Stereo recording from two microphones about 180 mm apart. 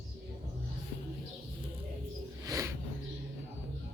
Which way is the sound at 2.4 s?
15° right (ahead or behind).